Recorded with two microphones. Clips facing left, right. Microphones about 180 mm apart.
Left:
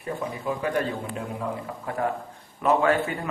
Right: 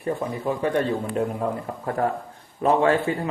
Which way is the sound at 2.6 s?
30° right (ahead or behind).